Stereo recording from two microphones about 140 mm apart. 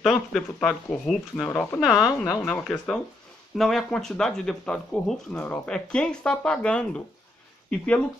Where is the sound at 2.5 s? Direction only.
5° left (ahead or behind).